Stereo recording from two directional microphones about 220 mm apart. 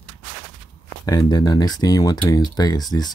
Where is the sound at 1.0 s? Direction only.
15° left (ahead or behind).